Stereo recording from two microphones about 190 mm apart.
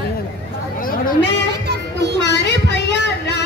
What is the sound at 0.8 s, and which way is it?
Chatter, 50° left (ahead or behind).